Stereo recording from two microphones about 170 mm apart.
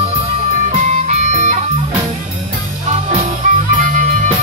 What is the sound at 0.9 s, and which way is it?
Music, 40° right (ahead or behind).